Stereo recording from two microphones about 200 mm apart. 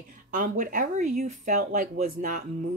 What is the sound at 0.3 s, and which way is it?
A woman's voice, 40° right (ahead or behind).